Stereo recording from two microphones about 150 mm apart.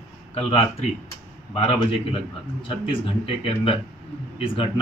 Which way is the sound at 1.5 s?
40° left (ahead or behind).